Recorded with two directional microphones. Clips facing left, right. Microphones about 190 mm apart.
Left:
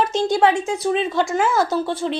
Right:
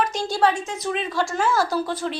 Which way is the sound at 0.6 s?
30° left (ahead or behind).